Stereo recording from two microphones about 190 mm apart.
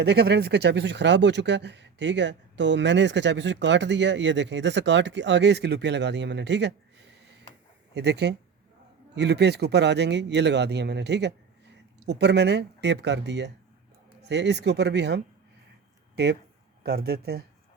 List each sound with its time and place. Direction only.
0.0 s speech: 60° right (ahead or behind)
7.9 s speech: 65° right (ahead or behind)